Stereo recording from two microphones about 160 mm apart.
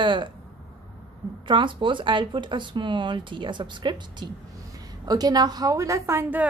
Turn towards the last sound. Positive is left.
turn(degrees=-15)  # may be behind; listen again after turning